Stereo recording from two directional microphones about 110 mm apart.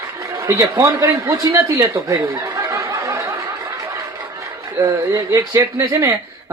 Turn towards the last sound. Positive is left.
turn(degrees=-30)  # may be behind; listen again after turning